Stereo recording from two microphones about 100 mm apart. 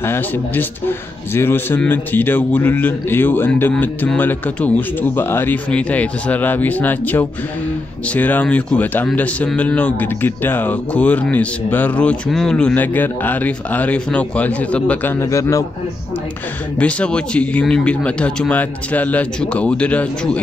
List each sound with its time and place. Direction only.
0.0 s a man's voice: 20° left (ahead or behind)
15.1 s a man's voice: 30° left (ahead or behind)
16.7 s a man's voice: 10° left (ahead or behind)